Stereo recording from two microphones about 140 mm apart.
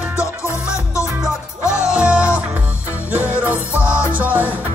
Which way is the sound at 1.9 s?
10° right (ahead or behind).